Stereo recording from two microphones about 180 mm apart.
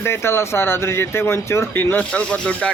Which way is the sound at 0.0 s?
15° left (ahead or behind).